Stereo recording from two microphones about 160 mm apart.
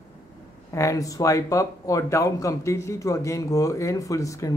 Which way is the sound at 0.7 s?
20° left (ahead or behind).